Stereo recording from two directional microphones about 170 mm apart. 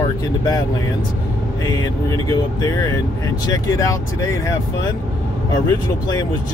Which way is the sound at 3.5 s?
20° left (ahead or behind).